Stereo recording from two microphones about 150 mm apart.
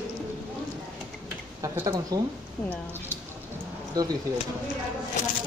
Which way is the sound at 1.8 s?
25° right (ahead or behind).